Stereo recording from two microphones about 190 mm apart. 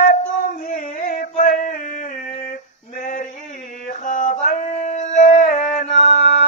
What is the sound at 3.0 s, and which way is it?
Male singing, 40° left (ahead or behind).